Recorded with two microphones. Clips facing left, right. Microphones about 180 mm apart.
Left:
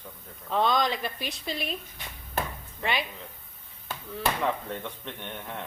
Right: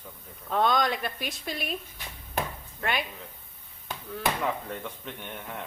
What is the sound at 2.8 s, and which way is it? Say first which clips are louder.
Speech: even; centre (ahead or behind).